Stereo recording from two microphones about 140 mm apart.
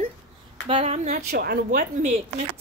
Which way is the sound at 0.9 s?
50° right (ahead or behind).